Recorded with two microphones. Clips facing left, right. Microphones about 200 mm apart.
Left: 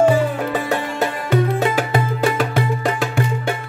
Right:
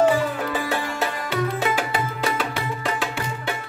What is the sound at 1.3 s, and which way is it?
Music, 45° left (ahead or behind).